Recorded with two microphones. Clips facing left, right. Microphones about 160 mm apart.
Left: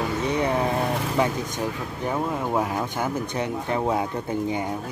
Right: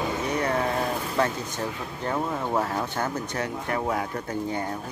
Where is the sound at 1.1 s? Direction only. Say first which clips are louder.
Left 2 dB; 15° left (ahead or behind).